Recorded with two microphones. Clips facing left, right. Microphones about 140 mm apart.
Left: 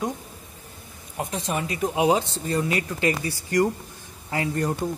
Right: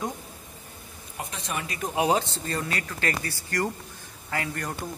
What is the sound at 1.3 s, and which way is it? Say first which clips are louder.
Speech: left 6 dB; 25° left (ahead or behind).